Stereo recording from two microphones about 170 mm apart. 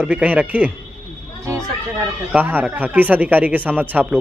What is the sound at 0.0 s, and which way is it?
Speech, 10° right (ahead or behind).